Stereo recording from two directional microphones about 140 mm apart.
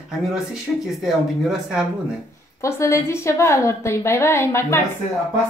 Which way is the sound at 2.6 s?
20° left (ahead or behind).